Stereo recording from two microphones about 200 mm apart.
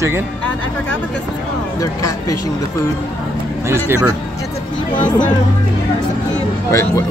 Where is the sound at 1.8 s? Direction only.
15° left (ahead or behind).